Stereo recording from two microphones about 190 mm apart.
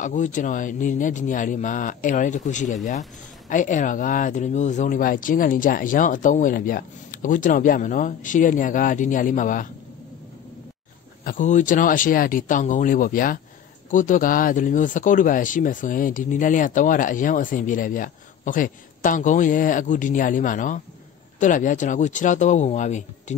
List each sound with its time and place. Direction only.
0.0 s a man's voice: 40° left (ahead or behind)
11.2 s a man's voice: 40° left (ahead or behind)